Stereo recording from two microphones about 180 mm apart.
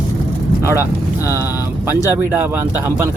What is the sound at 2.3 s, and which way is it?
Speech, 10° right (ahead or behind).